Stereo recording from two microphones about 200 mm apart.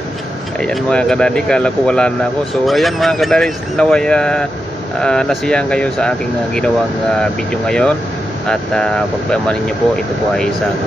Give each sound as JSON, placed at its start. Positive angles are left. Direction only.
{"t": 0.6, "sound": "speech", "side_deg": 5}